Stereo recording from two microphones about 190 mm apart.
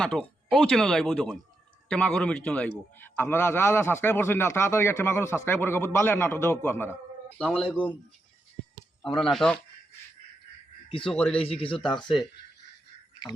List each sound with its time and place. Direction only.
0.0 s a man's voice: 5° left (ahead or behind)
9.1 s speech: 5° left (ahead or behind)
11.1 s a man's voice: 5° left (ahead or behind)
11.3 s speech: 30° left (ahead or behind)